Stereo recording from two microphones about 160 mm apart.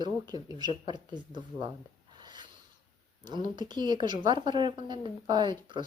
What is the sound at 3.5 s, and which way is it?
A woman's voice, 25° right (ahead or behind).